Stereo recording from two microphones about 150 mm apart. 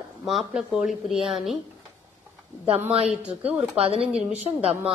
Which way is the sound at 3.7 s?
40° right (ahead or behind).